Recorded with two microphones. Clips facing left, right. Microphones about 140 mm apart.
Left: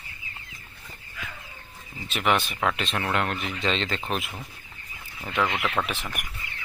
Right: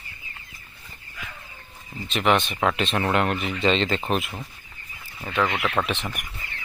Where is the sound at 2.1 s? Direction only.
5° left (ahead or behind).